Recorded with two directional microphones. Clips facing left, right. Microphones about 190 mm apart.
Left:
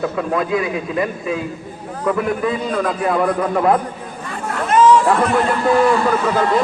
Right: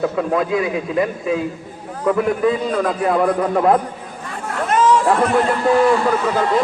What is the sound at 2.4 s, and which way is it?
A man's voice, 30° right (ahead or behind).